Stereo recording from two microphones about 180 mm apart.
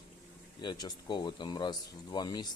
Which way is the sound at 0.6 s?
25° left (ahead or behind).